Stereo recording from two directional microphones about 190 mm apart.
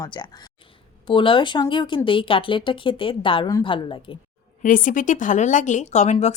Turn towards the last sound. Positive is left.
turn(degrees=35)  # may be behind; listen again after turning